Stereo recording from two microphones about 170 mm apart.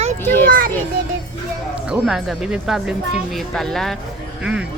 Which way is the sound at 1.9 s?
5° right (ahead or behind).